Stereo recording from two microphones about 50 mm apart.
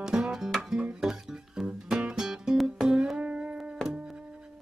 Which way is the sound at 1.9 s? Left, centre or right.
Centre.